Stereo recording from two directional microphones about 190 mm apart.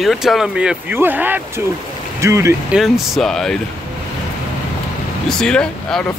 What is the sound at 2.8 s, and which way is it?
Speech, centre (ahead or behind).